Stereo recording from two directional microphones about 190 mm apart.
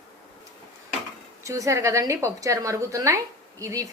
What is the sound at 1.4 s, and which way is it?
A woman's voice, 15° right (ahead or behind).